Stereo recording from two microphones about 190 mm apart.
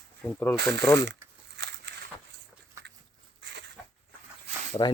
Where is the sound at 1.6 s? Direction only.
65° right (ahead or behind).